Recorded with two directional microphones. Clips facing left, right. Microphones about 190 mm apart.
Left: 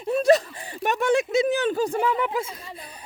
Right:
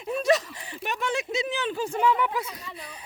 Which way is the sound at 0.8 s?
50° left (ahead or behind).